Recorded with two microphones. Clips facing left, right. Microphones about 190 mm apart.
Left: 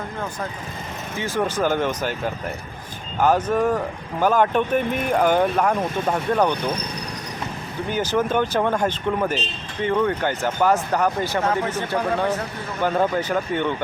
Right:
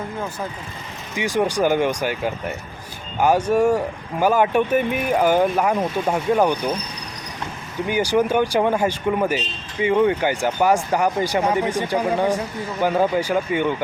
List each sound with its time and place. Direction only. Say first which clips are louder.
1.1 s speech: right 3 dB; 15° right (ahead or behind)
7.9 s speech: right 3 dB; 10° right (ahead or behind)